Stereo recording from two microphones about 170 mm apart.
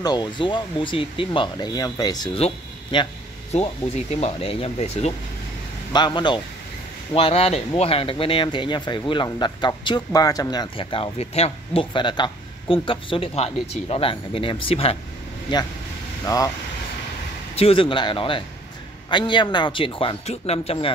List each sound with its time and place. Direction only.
0.0 s speech: 25° left (ahead or behind)
5.9 s speech: 25° left (ahead or behind)
17.6 s speech: 35° left (ahead or behind)